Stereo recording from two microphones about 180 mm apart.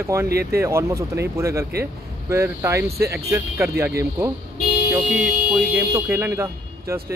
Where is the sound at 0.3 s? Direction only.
60° right (ahead or behind).